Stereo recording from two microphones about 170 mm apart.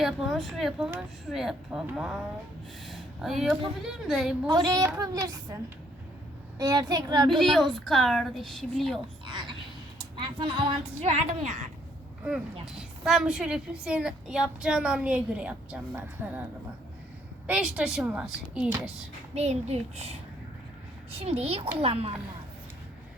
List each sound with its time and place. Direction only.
0.0 s a woman's voice: centre (ahead or behind)
4.4 s a woman's voice: 25° right (ahead or behind)
6.6 s a woman's voice: 25° right (ahead or behind)
7.3 s a woman's voice: centre (ahead or behind)
9.2 s a woman's voice: 25° right (ahead or behind); by 11.7 s 45° right (ahead or behind)
12.6 s a woman's voice: 5° right (ahead or behind)
17.4 s a woman's voice: 5° right (ahead or behind)
19.3 s speech: 40° right (ahead or behind)